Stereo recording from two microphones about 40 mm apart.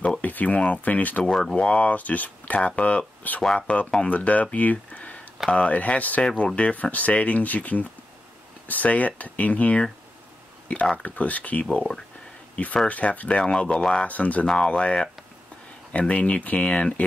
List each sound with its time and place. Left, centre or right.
0.2 s a sound: left
0.6 s speech: left
1.4 s speech: left
1.7 s speech: left
12.8 s speech: left
13.4 s speech: left
14.0 s speech: left
14.4 s speech: left